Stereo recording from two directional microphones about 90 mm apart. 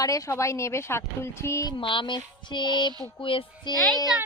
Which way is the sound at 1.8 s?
65° left (ahead or behind).